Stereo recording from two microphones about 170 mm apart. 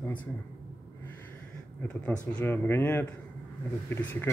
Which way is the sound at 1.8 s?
10° left (ahead or behind).